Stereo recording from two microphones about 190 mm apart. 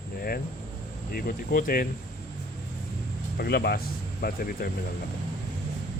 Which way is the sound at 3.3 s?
55° left (ahead or behind).